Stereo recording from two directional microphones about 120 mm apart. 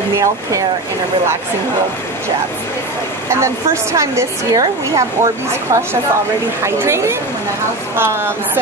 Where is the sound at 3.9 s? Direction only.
25° right (ahead or behind).